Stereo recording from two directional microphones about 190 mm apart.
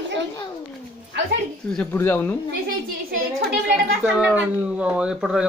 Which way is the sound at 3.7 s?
5° right (ahead or behind).